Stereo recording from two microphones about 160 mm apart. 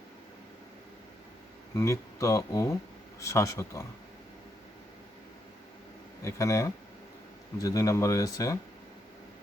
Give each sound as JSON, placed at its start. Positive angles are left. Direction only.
{"t": 1.7, "sound": "speech", "side_deg": 20}
{"t": 6.2, "sound": "speech", "side_deg": 20}